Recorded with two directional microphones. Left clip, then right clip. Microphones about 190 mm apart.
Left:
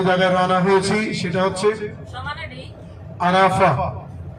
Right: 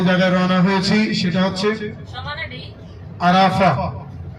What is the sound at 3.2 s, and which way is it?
Speech, 50° left (ahead or behind).